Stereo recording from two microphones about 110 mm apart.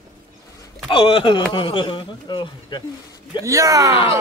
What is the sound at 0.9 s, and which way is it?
A man's voice, 50° left (ahead or behind).